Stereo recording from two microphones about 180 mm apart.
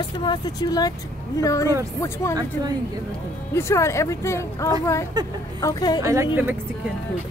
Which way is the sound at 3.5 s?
15° left (ahead or behind).